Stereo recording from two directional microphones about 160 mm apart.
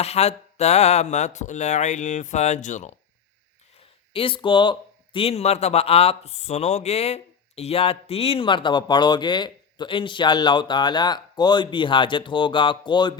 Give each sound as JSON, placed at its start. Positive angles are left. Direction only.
{"t": 0.0, "sound": "speech", "side_deg": 40}
{"t": 4.1, "sound": "speech", "side_deg": 35}